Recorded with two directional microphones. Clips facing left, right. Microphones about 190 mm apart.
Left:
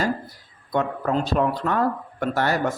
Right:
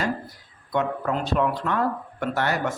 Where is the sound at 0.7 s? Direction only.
35° left (ahead or behind).